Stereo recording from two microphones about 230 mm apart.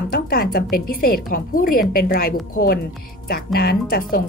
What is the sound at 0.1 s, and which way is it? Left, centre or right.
A woman's voice, left.